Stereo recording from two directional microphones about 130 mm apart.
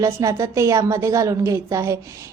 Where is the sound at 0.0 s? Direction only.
25° right (ahead or behind).